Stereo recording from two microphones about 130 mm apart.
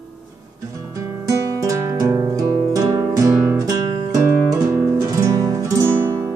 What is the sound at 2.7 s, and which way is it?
Music, 25° right (ahead or behind).